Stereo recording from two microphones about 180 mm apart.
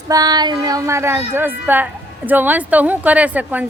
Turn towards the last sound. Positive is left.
turn(degrees=-10)  # may be behind; listen again after turning